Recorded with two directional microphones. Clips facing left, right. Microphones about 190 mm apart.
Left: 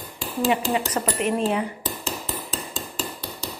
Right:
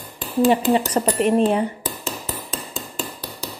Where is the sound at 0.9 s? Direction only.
35° right (ahead or behind).